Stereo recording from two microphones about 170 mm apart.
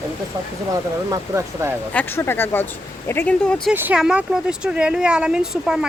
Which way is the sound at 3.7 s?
10° right (ahead or behind).